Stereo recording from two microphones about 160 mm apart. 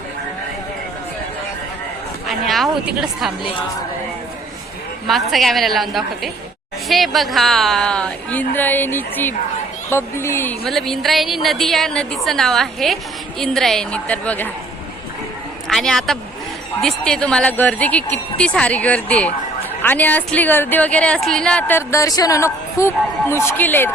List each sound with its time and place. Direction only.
2.2 s a woman's voice: centre (ahead or behind)
5.3 s a woman's voice: centre (ahead or behind)
10.7 s a woman's voice: centre (ahead or behind)
15.6 s a woman's voice: centre (ahead or behind)